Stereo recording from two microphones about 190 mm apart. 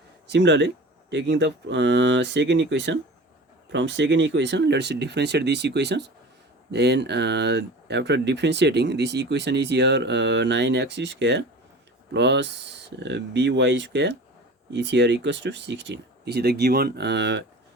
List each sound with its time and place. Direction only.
0.3 s speech: 70° right (ahead or behind)